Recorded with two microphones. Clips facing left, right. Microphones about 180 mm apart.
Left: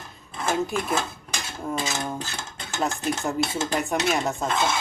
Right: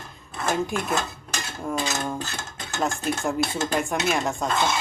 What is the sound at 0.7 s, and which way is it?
Speech, centre (ahead or behind).